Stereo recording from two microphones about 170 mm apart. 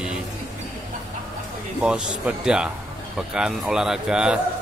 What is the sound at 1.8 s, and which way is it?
Speech, 5° right (ahead or behind).